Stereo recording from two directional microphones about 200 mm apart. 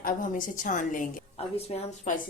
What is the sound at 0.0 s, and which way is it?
A woman's voice, 40° left (ahead or behind).